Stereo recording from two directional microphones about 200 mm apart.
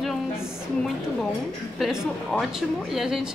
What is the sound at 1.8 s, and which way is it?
A woman's voice, centre (ahead or behind).